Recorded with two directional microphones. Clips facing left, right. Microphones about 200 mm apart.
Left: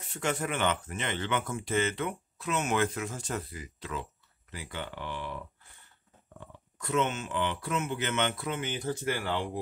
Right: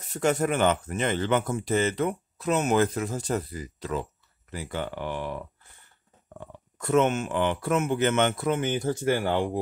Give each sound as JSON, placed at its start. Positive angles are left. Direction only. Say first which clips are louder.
{"t": 0.1, "sound": "speech", "louder": "right 7 dB", "side_deg": -40}
{"t": 6.8, "sound": "speech", "louder": "right 7 dB", "side_deg": -50}